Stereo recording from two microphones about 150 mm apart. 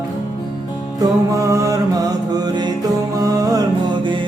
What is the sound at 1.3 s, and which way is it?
Music, 20° right (ahead or behind).